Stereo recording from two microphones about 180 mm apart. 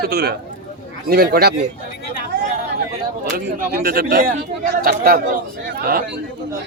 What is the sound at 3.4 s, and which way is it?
Speech, 55° right (ahead or behind).